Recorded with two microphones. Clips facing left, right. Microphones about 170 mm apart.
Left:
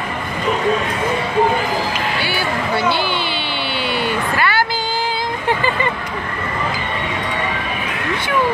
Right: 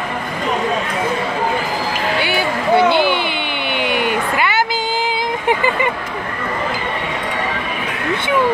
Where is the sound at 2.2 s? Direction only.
20° right (ahead or behind).